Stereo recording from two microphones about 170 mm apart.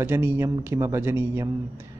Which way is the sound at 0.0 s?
15° right (ahead or behind).